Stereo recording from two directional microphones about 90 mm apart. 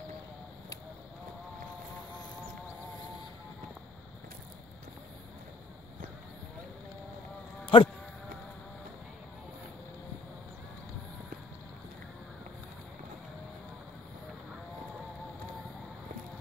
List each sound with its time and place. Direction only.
7.6 s speech: 70° left (ahead or behind)